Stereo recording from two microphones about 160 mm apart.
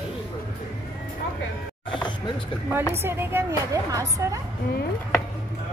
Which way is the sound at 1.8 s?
30° left (ahead or behind).